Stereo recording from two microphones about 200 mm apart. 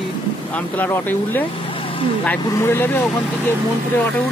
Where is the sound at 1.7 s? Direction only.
25° left (ahead or behind).